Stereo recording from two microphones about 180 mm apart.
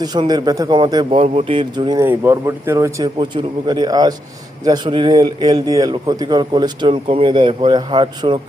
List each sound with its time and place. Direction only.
0.0 s a man's voice: 20° right (ahead or behind)